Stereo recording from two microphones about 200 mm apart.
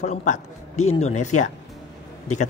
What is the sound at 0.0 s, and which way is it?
A man's voice, 35° left (ahead or behind).